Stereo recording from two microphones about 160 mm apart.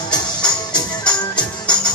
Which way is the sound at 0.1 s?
25° left (ahead or behind).